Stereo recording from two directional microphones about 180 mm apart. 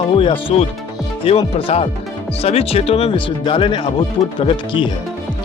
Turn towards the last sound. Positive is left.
turn(degrees=25)  # may be behind; listen again after turning